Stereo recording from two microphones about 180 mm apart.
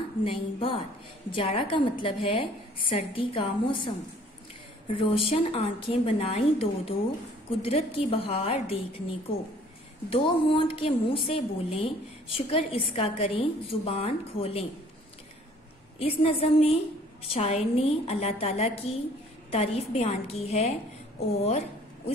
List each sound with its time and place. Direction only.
0.2 s a woman's voice: 30° left (ahead or behind)
4.9 s a woman's voice: 30° left (ahead or behind)
10.0 s a woman's voice: 30° left (ahead or behind)
16.0 s a woman's voice: 30° left (ahead or behind)
21.5 s a sound: 35° left (ahead or behind)